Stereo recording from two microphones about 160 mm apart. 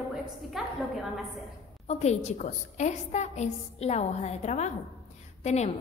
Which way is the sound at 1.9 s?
45° left (ahead or behind).